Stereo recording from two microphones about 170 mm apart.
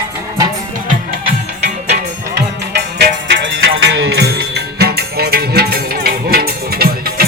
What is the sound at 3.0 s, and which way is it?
Music, 90° right.